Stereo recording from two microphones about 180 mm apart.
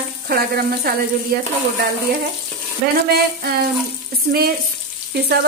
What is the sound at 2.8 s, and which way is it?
Speech, 60° right (ahead or behind).